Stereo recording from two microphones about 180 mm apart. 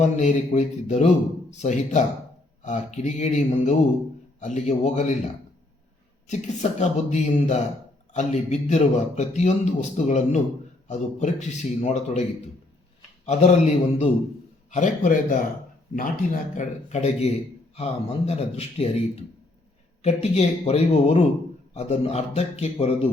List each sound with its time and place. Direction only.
0.0 s a man's voice: 40° left (ahead or behind)
6.2 s a man's voice: 40° left (ahead or behind)
13.2 s a man's voice: 40° left (ahead or behind)